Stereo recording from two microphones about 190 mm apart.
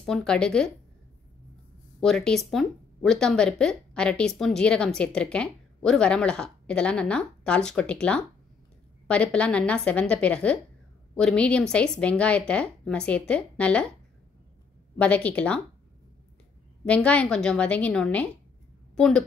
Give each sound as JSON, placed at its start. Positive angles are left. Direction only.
{"t": 0.0, "sound": "speech", "side_deg": 5}
{"t": 2.0, "sound": "a woman's voice", "side_deg": 5}
{"t": 15.0, "sound": "a woman's voice", "side_deg": 5}
{"t": 16.8, "sound": "a woman's voice", "side_deg": 5}